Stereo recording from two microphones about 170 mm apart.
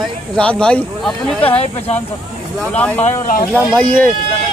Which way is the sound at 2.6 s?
5° left (ahead or behind).